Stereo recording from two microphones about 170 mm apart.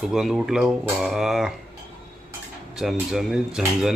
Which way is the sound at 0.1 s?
Centre (ahead or behind).